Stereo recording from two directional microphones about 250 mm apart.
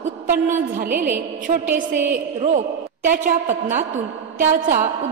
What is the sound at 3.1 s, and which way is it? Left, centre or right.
A woman's voice, right.